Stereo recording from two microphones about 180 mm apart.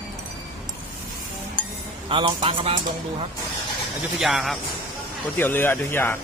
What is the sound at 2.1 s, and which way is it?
Speech, 30° right (ahead or behind).